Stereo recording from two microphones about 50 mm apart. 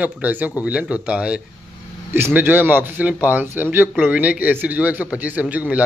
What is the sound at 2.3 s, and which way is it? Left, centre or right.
A man's voice, right.